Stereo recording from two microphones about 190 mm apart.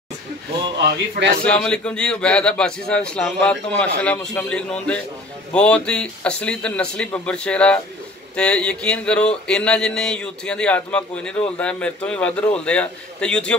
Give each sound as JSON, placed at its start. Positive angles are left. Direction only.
{"t": 0.7, "sound": "speech", "side_deg": -65}
{"t": 1.4, "sound": "a man's voice", "side_deg": 5}